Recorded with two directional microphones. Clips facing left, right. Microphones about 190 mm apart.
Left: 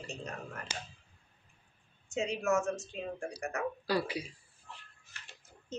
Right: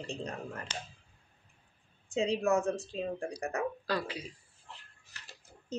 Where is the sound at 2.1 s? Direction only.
35° right (ahead or behind).